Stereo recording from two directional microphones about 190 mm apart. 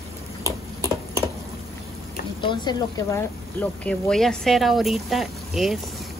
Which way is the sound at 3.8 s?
5° left (ahead or behind).